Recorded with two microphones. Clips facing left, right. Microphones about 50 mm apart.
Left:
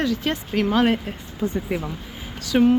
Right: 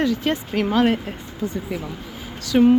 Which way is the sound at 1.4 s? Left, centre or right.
Centre.